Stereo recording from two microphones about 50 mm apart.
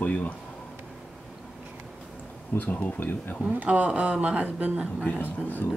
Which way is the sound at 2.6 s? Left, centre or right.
Left.